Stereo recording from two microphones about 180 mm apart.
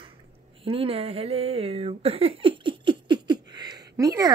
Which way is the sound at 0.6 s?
30° right (ahead or behind).